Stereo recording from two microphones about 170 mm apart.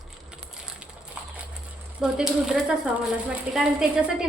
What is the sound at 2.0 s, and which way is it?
A woman's voice, 5° right (ahead or behind).